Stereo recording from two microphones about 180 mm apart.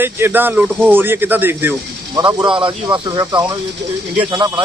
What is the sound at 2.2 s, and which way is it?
Speech, 25° right (ahead or behind).